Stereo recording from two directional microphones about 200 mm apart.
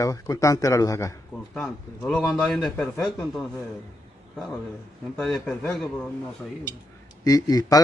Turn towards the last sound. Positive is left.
turn(degrees=20)  # may be behind; listen again after turning